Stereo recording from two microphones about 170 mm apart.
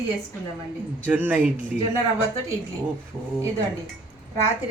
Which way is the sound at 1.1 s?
10° right (ahead or behind).